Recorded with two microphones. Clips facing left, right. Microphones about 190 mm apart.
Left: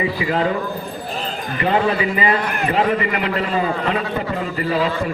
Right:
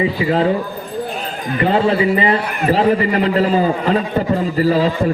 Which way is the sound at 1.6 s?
30° right (ahead or behind).